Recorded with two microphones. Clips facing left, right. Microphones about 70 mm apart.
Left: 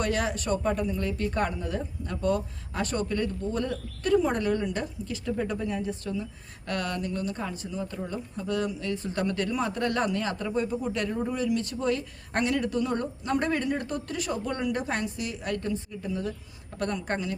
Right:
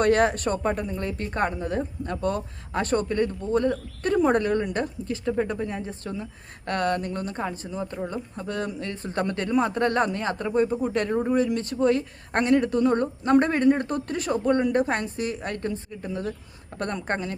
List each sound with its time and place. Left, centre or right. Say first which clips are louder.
0.0 s a woman's voice: right 8 dB; right